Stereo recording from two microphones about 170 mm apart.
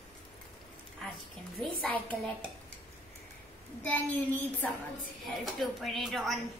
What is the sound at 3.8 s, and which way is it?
A woman's voice, 10° left (ahead or behind).